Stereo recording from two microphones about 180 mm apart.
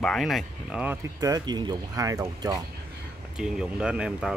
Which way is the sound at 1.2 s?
20° right (ahead or behind).